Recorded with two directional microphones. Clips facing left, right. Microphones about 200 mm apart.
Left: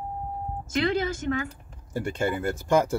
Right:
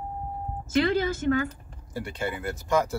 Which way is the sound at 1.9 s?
45° left (ahead or behind).